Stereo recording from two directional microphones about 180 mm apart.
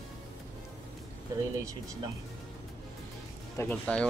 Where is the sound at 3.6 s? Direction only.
10° left (ahead or behind).